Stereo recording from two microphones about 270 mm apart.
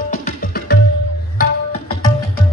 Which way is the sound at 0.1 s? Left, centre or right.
Left.